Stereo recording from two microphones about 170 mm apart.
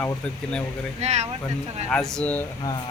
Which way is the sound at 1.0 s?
40° right (ahead or behind).